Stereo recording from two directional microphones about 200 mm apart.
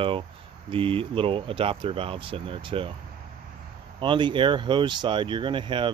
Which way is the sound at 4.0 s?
25° right (ahead or behind).